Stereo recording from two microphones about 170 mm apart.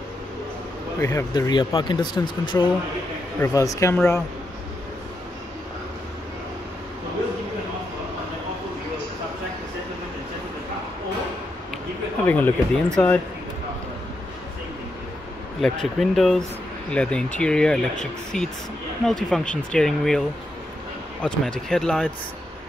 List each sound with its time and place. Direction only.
0.9 s speech: 15° left (ahead or behind)
3.3 s speech: 20° left (ahead or behind)
12.3 s speech: 10° left (ahead or behind)
15.6 s speech: centre (ahead or behind)